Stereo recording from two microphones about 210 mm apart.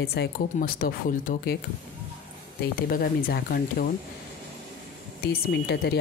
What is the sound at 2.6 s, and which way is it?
Speech, 45° left (ahead or behind).